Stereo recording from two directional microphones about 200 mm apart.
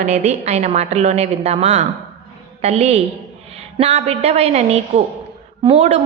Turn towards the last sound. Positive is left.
turn(degrees=-30)  # may be behind; listen again after turning